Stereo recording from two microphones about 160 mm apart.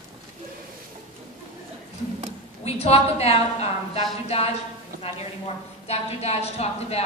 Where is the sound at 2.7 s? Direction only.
40° left (ahead or behind).